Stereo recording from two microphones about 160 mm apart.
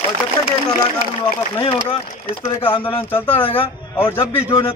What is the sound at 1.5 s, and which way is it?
Speech, 35° left (ahead or behind).